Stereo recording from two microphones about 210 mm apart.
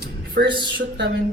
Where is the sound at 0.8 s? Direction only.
50° right (ahead or behind).